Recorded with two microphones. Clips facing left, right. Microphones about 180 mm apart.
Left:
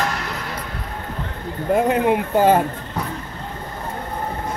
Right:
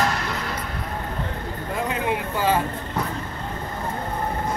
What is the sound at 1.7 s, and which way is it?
Speech, 55° left (ahead or behind).